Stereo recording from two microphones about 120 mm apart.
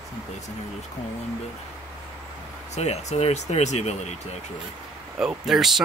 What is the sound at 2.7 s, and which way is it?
Speech, 65° left (ahead or behind).